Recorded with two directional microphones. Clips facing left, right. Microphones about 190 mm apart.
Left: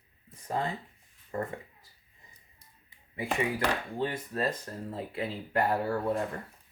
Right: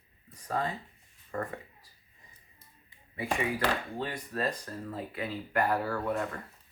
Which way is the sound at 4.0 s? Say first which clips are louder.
Left 5 dB; 25° left (ahead or behind).